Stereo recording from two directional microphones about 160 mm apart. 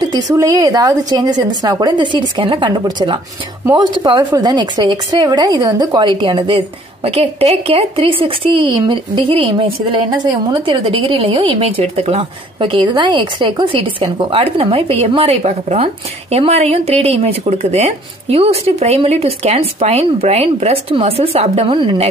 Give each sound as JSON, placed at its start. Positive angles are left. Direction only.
{"t": 0.0, "sound": "a woman's voice", "side_deg": -25}